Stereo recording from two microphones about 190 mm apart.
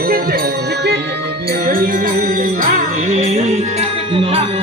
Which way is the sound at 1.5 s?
50° right (ahead or behind).